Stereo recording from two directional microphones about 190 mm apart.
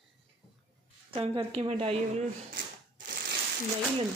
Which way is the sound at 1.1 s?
30° right (ahead or behind).